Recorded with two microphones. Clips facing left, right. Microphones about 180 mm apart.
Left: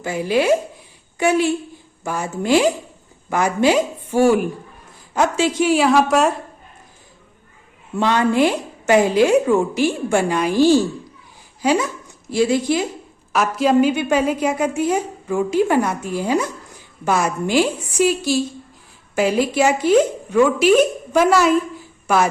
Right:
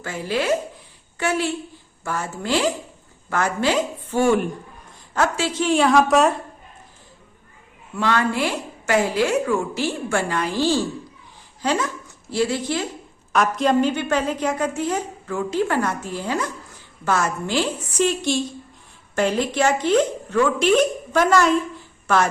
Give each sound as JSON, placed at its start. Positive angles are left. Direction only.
{"t": 0.0, "sound": "a woman's voice", "side_deg": 15}
{"t": 7.9, "sound": "a woman's voice", "side_deg": 20}
{"t": 22.0, "sound": "a sound", "side_deg": 10}